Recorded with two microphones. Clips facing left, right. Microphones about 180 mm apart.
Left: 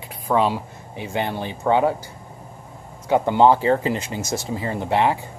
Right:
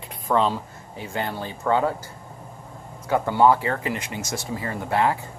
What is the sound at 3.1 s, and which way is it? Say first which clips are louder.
Speech: left 3 dB; 20° left (ahead or behind).